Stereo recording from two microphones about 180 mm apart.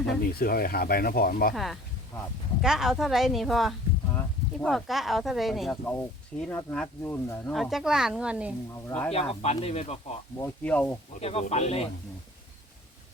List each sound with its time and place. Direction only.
0.1 s speech: 55° left (ahead or behind)
1.5 s speech: centre (ahead or behind)
7.5 s speech: centre (ahead or behind)
8.7 s speech: 5° left (ahead or behind)
9.4 s speech: 35° left (ahead or behind)
10.3 s speech: 10° left (ahead or behind)
11.2 s speech: 35° left (ahead or behind)